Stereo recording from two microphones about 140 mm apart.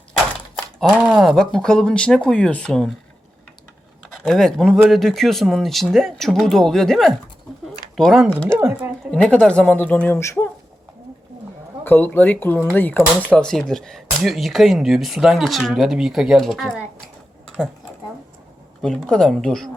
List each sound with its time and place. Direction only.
0.9 s speech: 15° right (ahead or behind)
1.2 s speech: centre (ahead or behind)
4.2 s speech: 5° left (ahead or behind)
8.5 s speech: 15° right (ahead or behind)
9.1 s a man's voice: 5° left (ahead or behind)
11.9 s a man's voice: 15° left (ahead or behind)
18.8 s speech: 5° left (ahead or behind)